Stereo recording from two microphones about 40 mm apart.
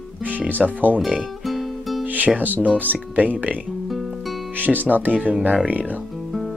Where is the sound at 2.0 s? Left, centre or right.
Right.